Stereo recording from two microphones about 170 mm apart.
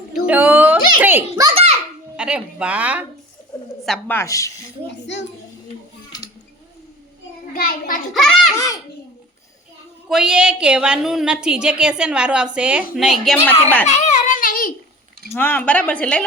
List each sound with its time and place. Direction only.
0.1 s a sound: 10° right (ahead or behind)
1.0 s a child's voice: 10° right (ahead or behind)
1.5 s a child's voice: 40° right (ahead or behind)
2.1 s speech: 5° right (ahead or behind)
3.8 s speech: 10° left (ahead or behind)
7.5 s a child's voice: 60° left (ahead or behind)
8.1 s a woman's voice: centre (ahead or behind)
10.1 s a woman's voice: 5° right (ahead or behind)
13.8 s babbling: 45° left (ahead or behind)
15.3 s speech: 10° left (ahead or behind)